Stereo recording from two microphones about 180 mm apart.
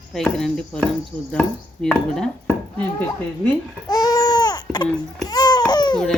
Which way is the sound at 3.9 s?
20° left (ahead or behind).